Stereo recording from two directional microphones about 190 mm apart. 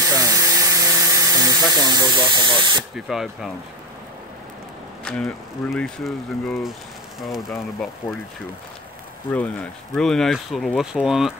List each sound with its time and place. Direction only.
0.1 s electric toothbrush: 20° right (ahead or behind)
3.1 s speech: centre (ahead or behind)
5.0 s speech: 5° left (ahead or behind)
9.3 s speech: 10° left (ahead or behind)